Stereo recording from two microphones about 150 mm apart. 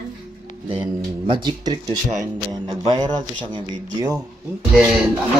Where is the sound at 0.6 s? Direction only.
35° right (ahead or behind).